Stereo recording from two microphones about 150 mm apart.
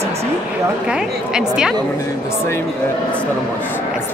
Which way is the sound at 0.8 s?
5° right (ahead or behind).